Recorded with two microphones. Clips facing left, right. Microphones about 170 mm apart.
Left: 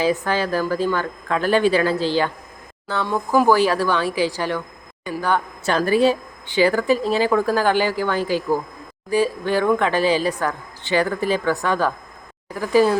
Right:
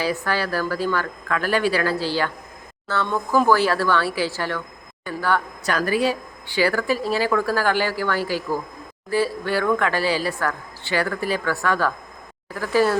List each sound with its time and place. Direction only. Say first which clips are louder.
0.0 s speech: left 4 dB; 20° left (ahead or behind)